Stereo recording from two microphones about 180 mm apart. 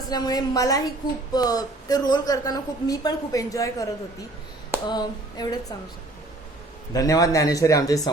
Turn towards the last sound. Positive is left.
turn(degrees=20)  # may be behind; listen again after turning